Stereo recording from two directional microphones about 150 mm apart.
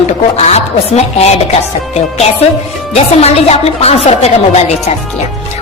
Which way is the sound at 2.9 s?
45° left (ahead or behind).